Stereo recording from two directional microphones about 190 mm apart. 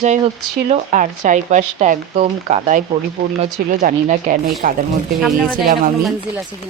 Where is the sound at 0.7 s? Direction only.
40° right (ahead or behind).